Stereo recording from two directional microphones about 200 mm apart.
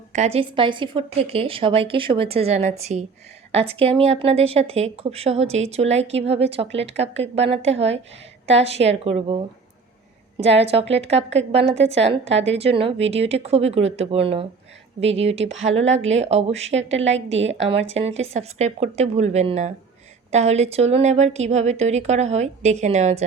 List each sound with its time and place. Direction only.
0.1 s a woman's voice: 35° right (ahead or behind)
17.0 s a woman's voice: 65° right (ahead or behind)
17.4 s a woman's voice: 30° right (ahead or behind)